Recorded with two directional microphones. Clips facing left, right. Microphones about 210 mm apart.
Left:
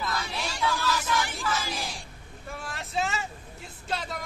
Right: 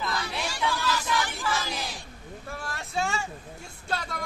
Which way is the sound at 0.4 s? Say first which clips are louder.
Left 1 dB; 10° right (ahead or behind).